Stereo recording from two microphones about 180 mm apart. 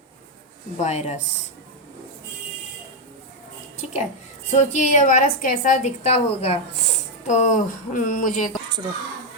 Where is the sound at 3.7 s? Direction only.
40° left (ahead or behind).